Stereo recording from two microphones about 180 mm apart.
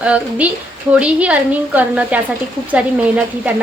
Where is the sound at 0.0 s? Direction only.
5° right (ahead or behind).